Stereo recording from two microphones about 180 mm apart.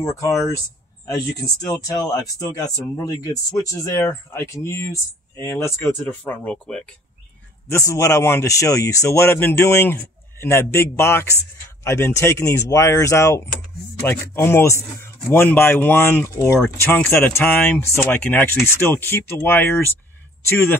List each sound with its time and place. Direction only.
0.2 s speech: 15° left (ahead or behind)
7.7 s speech: 15° left (ahead or behind)